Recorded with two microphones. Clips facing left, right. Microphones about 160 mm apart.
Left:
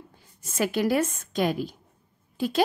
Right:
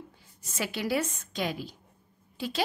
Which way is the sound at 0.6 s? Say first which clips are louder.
Left 6 dB; 50° left (ahead or behind).